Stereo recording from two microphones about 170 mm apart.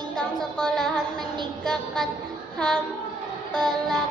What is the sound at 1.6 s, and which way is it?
Speech, centre (ahead or behind).